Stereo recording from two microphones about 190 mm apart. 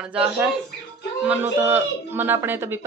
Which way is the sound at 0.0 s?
5° right (ahead or behind).